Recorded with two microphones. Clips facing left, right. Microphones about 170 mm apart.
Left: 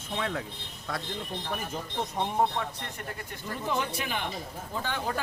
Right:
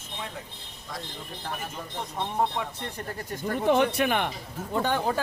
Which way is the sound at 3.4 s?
60° right (ahead or behind).